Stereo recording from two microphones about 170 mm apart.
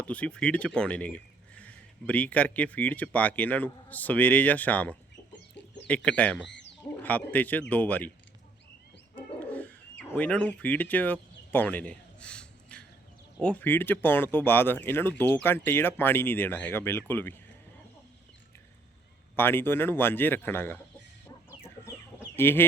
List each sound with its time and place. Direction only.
0.0 s speech: 5° left (ahead or behind)
5.6 s chicken: 90° left
5.9 s speech: 5° left (ahead or behind)
6.5 s a sound: 90° left
7.0 s speech: 10° left (ahead or behind)
9.5 s a sound: 10° left (ahead or behind)
13.4 s speech: 10° left (ahead or behind)
19.4 s speech: 15° left (ahead or behind)
22.4 s speech: 15° left (ahead or behind)